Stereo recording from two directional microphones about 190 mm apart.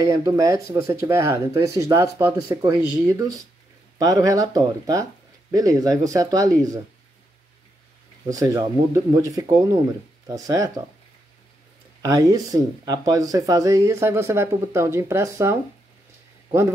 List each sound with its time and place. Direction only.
0.0 s speech: 15° right (ahead or behind)
8.3 s speech: 20° right (ahead or behind)
12.0 s speech: 20° right (ahead or behind)